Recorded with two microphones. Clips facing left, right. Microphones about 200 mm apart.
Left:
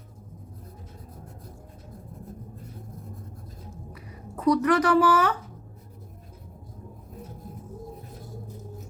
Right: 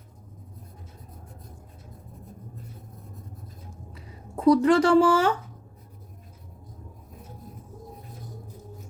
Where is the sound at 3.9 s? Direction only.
30° right (ahead or behind).